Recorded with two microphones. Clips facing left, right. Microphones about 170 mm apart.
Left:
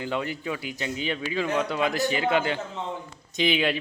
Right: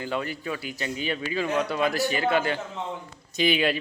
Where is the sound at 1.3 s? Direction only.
5° right (ahead or behind).